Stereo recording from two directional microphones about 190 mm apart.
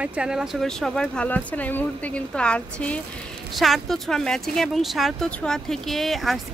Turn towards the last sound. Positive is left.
turn(degrees=0)  # may be behind; listen again after turning